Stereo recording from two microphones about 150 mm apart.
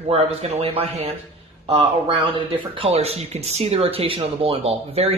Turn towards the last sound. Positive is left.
turn(degrees=-40)  # may be behind; listen again after turning